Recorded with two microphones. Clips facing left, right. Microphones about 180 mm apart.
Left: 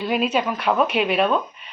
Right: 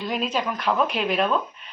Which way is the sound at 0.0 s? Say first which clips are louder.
Left 5 dB; 5° left (ahead or behind).